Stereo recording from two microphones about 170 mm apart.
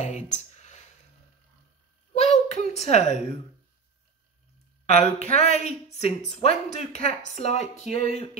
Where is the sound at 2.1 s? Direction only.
40° left (ahead or behind).